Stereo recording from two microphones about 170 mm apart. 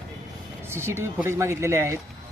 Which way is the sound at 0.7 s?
15° right (ahead or behind).